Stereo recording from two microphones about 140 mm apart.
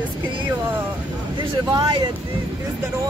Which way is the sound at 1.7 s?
30° right (ahead or behind).